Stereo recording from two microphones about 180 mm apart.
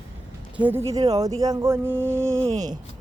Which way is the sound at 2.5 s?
40° right (ahead or behind).